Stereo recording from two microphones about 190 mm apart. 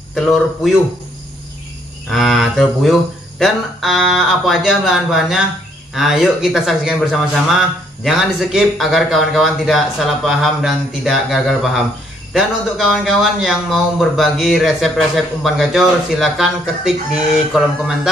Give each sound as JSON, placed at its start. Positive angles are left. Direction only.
{"t": 0.1, "sound": "a man's voice", "side_deg": 0}
{"t": 2.0, "sound": "a man's voice", "side_deg": 0}